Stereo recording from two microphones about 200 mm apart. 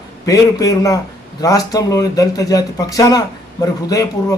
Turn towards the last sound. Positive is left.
turn(degrees=20)  # may be behind; listen again after turning